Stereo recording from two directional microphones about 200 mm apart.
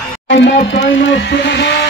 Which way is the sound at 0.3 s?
60° left (ahead or behind).